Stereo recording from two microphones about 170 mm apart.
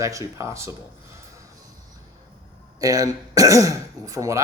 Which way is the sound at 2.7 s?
20° right (ahead or behind).